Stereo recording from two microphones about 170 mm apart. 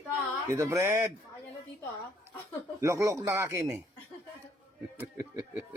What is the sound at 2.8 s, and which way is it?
Speech, 20° right (ahead or behind).